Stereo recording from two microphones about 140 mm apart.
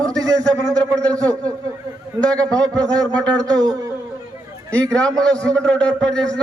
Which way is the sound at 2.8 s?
25° right (ahead or behind).